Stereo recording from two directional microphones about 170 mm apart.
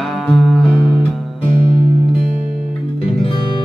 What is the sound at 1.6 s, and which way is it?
Music, 30° left (ahead or behind).